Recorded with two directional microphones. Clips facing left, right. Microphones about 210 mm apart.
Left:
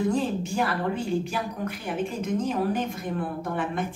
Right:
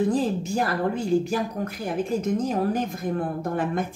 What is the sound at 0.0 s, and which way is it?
Speech, 35° right (ahead or behind).